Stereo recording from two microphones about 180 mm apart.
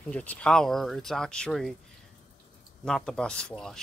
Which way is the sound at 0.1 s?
5° left (ahead or behind).